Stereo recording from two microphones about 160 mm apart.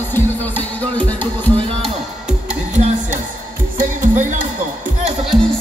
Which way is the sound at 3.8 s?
55° right (ahead or behind).